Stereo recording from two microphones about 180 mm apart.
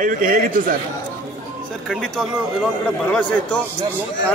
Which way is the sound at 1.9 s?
Centre (ahead or behind).